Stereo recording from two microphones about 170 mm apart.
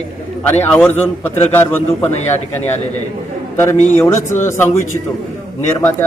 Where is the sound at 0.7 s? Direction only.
10° left (ahead or behind).